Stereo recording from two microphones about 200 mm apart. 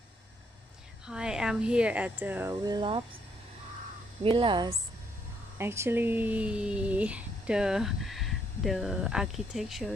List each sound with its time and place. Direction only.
1.0 s speech: 5° right (ahead or behind)
2.6 s speech: 20° right (ahead or behind)
4.2 s speech: 25° right (ahead or behind)
5.6 s speech: 10° right (ahead or behind)